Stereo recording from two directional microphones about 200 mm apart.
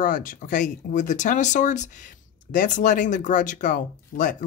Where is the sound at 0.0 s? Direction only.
45° left (ahead or behind).